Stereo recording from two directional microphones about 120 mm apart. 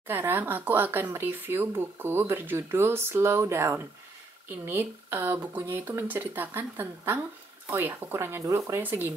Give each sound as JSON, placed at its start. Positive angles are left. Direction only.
{"t": 0.0, "sound": "speech", "side_deg": -15}